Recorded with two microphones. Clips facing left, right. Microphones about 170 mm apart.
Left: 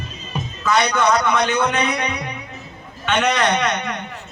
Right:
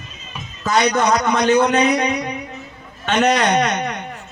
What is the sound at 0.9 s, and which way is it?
A man's voice, 35° right (ahead or behind).